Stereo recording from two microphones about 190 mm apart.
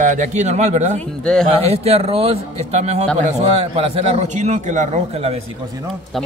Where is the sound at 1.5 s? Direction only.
35° right (ahead or behind).